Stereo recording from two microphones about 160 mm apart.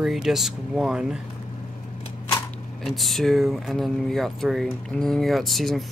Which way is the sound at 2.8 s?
Centre (ahead or behind).